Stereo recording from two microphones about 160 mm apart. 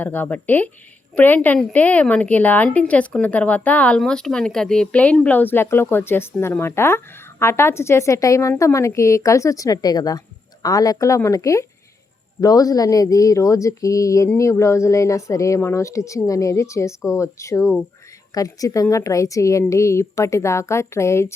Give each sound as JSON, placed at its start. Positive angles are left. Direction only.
{"t": 0.0, "sound": "a woman's voice", "side_deg": 10}